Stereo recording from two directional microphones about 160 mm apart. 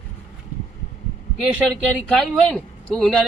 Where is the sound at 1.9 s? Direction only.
5° left (ahead or behind).